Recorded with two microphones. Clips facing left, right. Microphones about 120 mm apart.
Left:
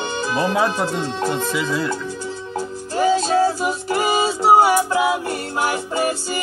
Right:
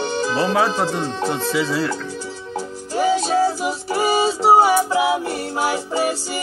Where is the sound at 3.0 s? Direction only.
15° right (ahead or behind).